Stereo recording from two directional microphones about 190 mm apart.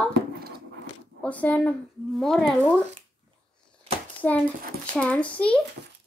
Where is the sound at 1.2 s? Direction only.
5° left (ahead or behind).